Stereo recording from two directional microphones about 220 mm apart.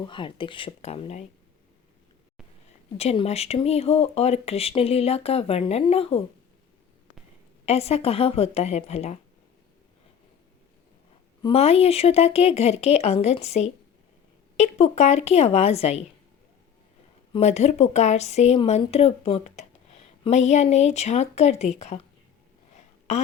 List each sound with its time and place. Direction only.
0.0 s a woman's voice: 20° left (ahead or behind)
3.0 s a woman's voice: 30° left (ahead or behind)
7.6 s a woman's voice: 30° left (ahead or behind)
11.4 s a woman's voice: 25° left (ahead or behind)
17.3 s a woman's voice: 30° left (ahead or behind)
22.7 s a sound: 30° left (ahead or behind)